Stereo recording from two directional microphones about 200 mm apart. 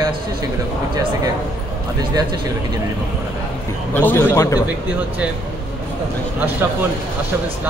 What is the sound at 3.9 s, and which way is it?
Speech, 10° left (ahead or behind).